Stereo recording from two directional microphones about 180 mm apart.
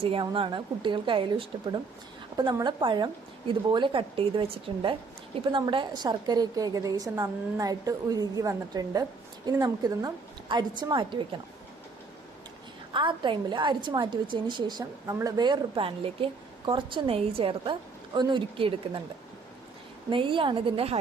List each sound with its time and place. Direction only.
0.0 s speech: 30° right (ahead or behind)
12.9 s speech: 25° right (ahead or behind)
20.1 s speech: 30° right (ahead or behind)